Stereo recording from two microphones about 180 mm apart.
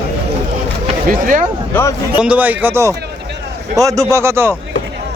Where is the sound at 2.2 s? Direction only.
10° right (ahead or behind).